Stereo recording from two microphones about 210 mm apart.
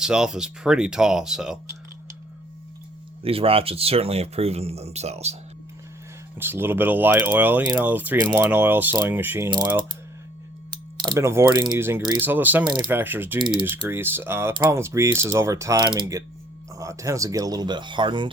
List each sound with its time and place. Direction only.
0.0 s speech: 5° right (ahead or behind)
3.2 s speech: 25° right (ahead or behind)
6.3 s speech: 10° right (ahead or behind)
10.9 s speech: 20° right (ahead or behind)
12.6 s speech: 20° right (ahead or behind)
12.9 s speech: 10° right (ahead or behind)
13.4 s speech: 20° right (ahead or behind)
13.7 s speech: 10° right (ahead or behind)